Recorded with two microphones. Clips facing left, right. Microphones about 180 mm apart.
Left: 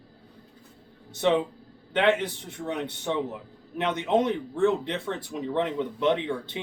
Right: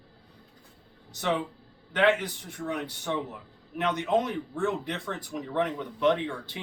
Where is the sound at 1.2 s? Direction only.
25° left (ahead or behind).